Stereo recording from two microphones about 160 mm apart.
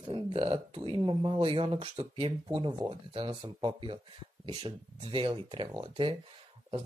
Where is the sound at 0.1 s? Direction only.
35° right (ahead or behind).